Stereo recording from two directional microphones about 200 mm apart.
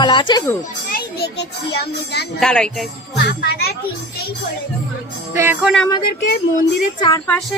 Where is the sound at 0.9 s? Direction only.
55° left (ahead or behind).